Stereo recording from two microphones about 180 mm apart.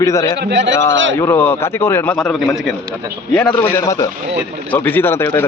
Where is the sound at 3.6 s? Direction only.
15° left (ahead or behind).